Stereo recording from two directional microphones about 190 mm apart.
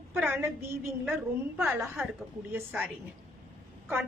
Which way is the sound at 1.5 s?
Centre (ahead or behind).